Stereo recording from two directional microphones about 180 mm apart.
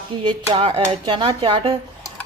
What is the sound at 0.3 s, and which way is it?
Dishes, 25° right (ahead or behind).